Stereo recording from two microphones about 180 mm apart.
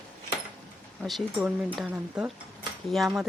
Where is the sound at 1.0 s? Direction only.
Centre (ahead or behind).